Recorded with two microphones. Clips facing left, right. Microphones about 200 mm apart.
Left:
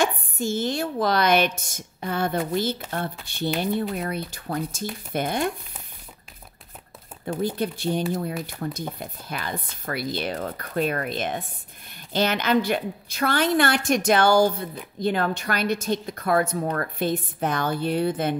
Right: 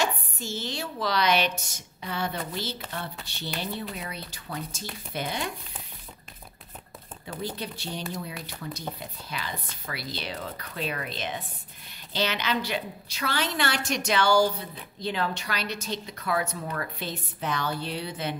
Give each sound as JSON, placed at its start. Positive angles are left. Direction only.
{"t": 0.0, "sound": "a woman's voice", "side_deg": 50}
{"t": 7.2, "sound": "a woman's voice", "side_deg": 50}